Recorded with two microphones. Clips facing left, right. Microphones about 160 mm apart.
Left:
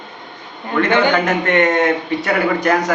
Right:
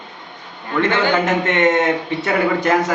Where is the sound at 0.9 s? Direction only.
20° left (ahead or behind).